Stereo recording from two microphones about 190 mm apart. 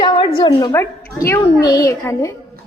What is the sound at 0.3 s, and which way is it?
Speech, 25° left (ahead or behind).